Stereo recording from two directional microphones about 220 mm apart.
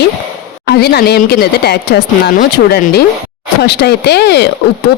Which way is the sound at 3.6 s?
50° left (ahead or behind).